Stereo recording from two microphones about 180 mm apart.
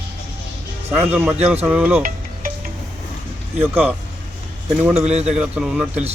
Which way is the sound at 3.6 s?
10° right (ahead or behind).